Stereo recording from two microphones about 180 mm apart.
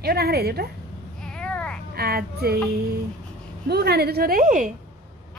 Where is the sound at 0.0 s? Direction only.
60° right (ahead or behind).